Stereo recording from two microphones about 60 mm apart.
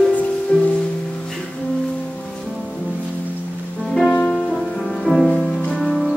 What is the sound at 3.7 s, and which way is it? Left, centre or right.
Music, centre.